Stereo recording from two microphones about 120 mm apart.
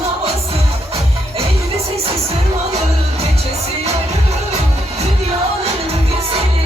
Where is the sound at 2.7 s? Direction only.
60° right (ahead or behind).